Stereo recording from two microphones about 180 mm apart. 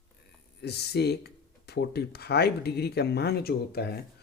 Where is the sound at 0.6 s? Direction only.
65° left (ahead or behind).